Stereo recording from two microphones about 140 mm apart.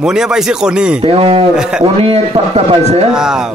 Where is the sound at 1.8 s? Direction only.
45° right (ahead or behind).